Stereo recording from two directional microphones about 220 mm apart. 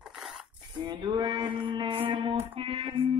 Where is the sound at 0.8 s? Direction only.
20° right (ahead or behind).